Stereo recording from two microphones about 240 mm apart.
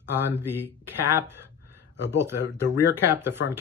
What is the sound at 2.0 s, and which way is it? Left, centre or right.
Speech, left.